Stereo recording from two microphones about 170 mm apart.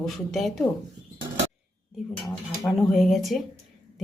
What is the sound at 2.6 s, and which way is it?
Speech, centre (ahead or behind).